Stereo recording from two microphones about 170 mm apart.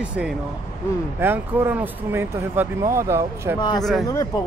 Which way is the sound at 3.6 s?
25° left (ahead or behind).